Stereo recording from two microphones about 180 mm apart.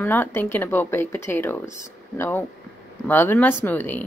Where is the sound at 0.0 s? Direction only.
10° left (ahead or behind).